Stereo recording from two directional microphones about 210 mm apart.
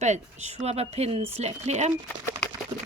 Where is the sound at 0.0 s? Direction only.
30° right (ahead or behind).